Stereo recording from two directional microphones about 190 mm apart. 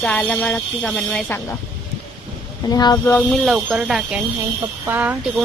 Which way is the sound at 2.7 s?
20° left (ahead or behind).